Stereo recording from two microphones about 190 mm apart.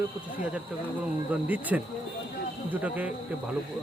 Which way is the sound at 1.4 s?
10° right (ahead or behind).